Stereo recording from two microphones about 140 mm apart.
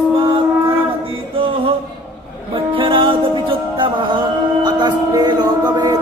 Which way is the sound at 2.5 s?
35° right (ahead or behind).